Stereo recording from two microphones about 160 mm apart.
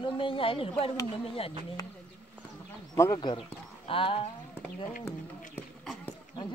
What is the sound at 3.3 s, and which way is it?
Speech, 35° left (ahead or behind).